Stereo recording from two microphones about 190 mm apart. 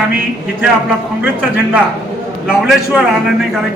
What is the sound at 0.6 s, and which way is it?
Speech, 5° right (ahead or behind).